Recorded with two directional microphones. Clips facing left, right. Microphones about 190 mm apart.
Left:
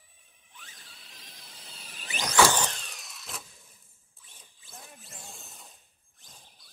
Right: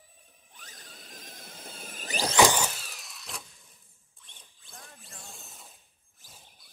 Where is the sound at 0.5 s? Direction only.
40° right (ahead or behind).